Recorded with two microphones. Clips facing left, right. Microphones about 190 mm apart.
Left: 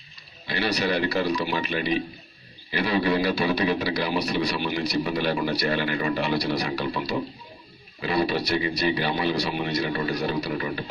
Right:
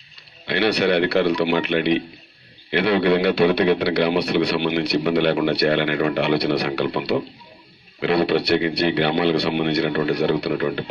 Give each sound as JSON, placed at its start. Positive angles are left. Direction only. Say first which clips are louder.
{"t": 0.5, "sound": "a man's voice", "louder": "right 6 dB", "side_deg": -65}